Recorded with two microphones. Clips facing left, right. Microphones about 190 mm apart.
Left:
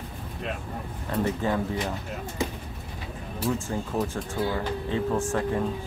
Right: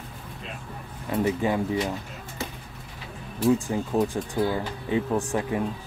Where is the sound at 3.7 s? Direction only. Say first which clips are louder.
Right 4 dB; 15° right (ahead or behind).